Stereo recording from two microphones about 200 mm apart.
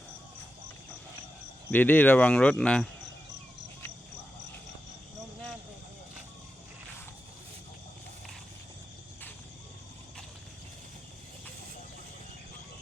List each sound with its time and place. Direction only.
1.7 s speech: 10° left (ahead or behind)